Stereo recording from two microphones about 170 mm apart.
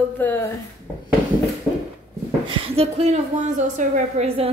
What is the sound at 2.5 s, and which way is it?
A woman's voice, 30° right (ahead or behind).